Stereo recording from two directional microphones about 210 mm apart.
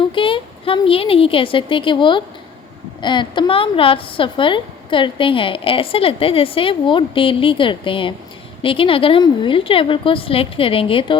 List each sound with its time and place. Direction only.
0.0 s a woman's voice: 25° left (ahead or behind)